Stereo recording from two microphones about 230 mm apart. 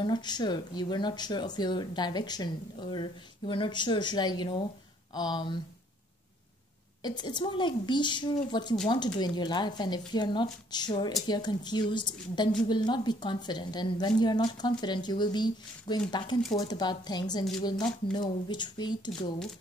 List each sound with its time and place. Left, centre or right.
0.0 s a woman's voice: centre
7.0 s a woman's voice: centre